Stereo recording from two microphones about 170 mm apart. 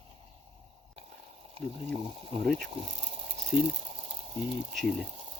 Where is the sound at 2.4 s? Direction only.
Centre (ahead or behind).